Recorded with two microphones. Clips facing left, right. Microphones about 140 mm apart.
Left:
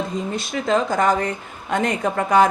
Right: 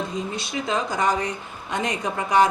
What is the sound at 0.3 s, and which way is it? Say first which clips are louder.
Speech: left 7 dB; 50° left (ahead or behind).